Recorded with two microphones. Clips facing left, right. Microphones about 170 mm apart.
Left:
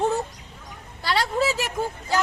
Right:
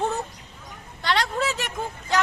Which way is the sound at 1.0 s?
5° left (ahead or behind).